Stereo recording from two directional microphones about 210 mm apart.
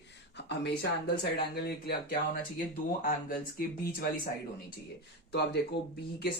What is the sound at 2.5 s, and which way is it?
Speech, 40° left (ahead or behind).